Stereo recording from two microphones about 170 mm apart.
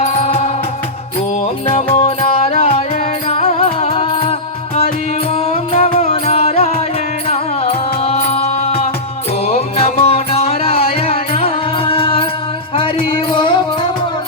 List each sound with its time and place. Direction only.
0.0 s music: 35° left (ahead or behind)
2.0 s music: 35° left (ahead or behind)